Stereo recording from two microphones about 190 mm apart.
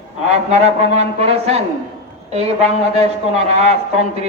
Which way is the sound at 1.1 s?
30° right (ahead or behind).